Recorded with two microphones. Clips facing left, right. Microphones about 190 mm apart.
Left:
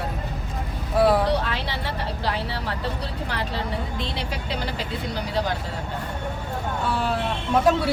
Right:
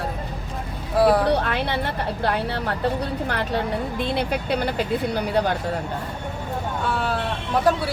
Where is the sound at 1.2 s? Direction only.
55° right (ahead or behind).